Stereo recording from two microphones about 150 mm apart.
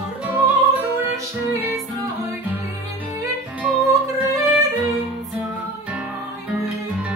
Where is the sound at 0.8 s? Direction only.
20° right (ahead or behind).